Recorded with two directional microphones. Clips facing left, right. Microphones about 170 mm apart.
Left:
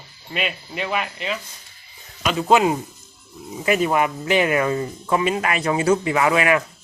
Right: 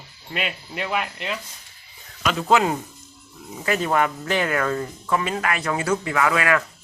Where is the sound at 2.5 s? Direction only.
15° left (ahead or behind).